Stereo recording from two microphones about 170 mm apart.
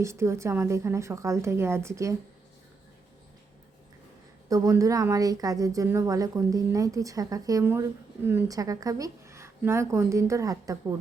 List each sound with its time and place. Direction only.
0.0 s a woman's voice: 15° right (ahead or behind)
4.4 s a woman's voice: 20° right (ahead or behind)